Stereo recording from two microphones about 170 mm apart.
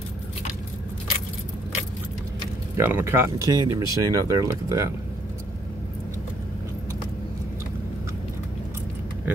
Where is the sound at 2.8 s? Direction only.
15° right (ahead or behind).